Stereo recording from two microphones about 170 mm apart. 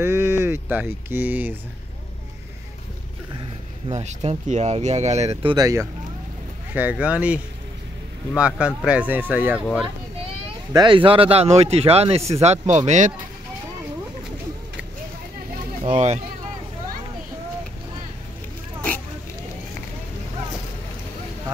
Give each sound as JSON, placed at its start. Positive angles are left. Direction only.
{"t": 0.0, "sound": "speech", "side_deg": -15}
{"t": 3.9, "sound": "speech", "side_deg": -40}
{"t": 6.7, "sound": "speech", "side_deg": -10}
{"t": 8.4, "sound": "speech", "side_deg": -5}
{"t": 10.7, "sound": "speech", "side_deg": -25}
{"t": 15.8, "sound": "speech", "side_deg": -40}